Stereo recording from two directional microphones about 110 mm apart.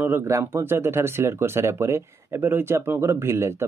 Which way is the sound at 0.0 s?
20° right (ahead or behind).